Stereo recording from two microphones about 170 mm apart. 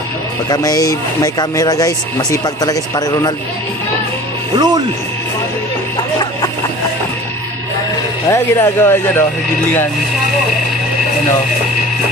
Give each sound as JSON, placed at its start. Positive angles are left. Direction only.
{"t": 0.4, "sound": "speech", "side_deg": 25}
{"t": 4.5, "sound": "speech", "side_deg": -25}
{"t": 8.3, "sound": "speech", "side_deg": 15}